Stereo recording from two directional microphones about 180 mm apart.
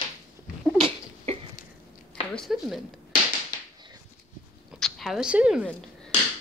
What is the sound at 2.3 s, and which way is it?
Speech, centre (ahead or behind).